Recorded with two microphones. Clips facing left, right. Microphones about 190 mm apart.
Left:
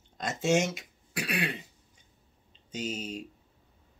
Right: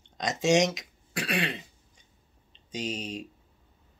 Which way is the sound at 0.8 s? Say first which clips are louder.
Right 1 dB; 10° left (ahead or behind).